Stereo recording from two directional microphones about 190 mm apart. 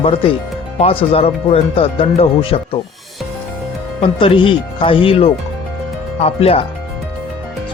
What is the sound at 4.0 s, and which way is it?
Speech, 25° left (ahead or behind).